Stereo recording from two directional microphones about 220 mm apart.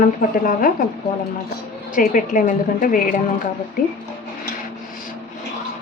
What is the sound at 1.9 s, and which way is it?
A woman's voice, 35° left (ahead or behind).